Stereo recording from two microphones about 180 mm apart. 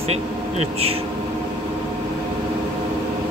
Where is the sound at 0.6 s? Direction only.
35° right (ahead or behind).